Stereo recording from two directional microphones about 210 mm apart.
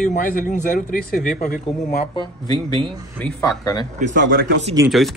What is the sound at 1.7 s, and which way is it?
Speech, 25° left (ahead or behind).